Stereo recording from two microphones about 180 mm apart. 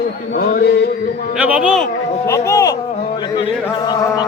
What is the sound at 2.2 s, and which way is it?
Speech, 15° left (ahead or behind).